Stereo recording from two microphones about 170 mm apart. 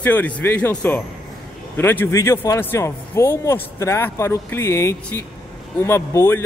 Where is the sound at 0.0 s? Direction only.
10° left (ahead or behind).